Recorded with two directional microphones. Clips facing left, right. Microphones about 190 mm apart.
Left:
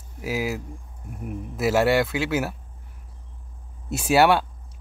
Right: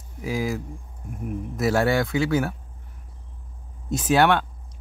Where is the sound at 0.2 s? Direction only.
5° left (ahead or behind).